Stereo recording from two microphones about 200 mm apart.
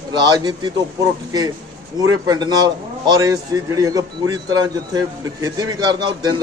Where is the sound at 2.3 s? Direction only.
20° right (ahead or behind).